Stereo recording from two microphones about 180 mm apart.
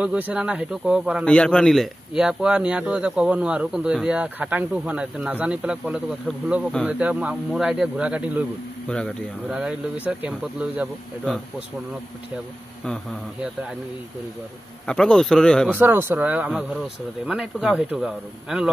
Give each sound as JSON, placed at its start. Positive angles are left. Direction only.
{"t": 0.0, "sound": "speech", "side_deg": -10}
{"t": 1.2, "sound": "speech", "side_deg": 5}
{"t": 8.8, "sound": "speech", "side_deg": 5}
{"t": 9.5, "sound": "speech", "side_deg": -5}
{"t": 12.8, "sound": "speech", "side_deg": 5}
{"t": 13.4, "sound": "speech", "side_deg": -5}
{"t": 14.9, "sound": "speech", "side_deg": 5}
{"t": 15.7, "sound": "speech", "side_deg": -10}